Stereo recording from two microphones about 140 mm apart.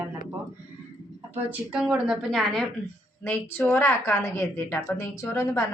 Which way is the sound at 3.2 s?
15° left (ahead or behind).